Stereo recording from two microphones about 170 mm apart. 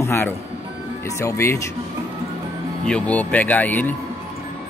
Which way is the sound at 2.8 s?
5° left (ahead or behind).